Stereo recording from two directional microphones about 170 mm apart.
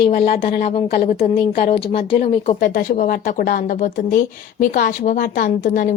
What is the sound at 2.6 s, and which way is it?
Speech, 55° left (ahead or behind).